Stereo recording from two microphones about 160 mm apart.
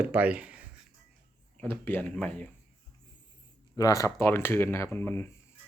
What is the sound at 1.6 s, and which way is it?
Speech, 15° left (ahead or behind).